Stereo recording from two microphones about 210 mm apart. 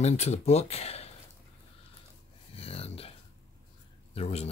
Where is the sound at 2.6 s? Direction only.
30° left (ahead or behind).